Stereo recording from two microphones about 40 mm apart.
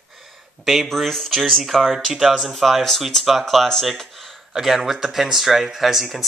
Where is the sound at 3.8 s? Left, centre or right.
Centre.